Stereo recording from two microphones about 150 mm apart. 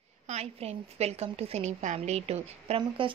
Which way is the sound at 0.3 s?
45° right (ahead or behind).